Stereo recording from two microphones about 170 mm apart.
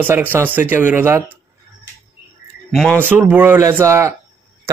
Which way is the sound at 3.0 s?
10° right (ahead or behind).